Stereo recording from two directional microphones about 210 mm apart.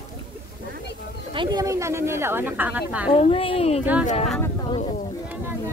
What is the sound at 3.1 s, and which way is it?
Speech, 25° left (ahead or behind).